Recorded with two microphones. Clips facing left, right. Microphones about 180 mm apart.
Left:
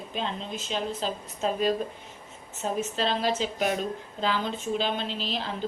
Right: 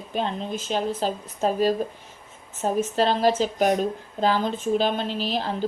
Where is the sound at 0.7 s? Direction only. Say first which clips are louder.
Right 5 dB; 45° right (ahead or behind).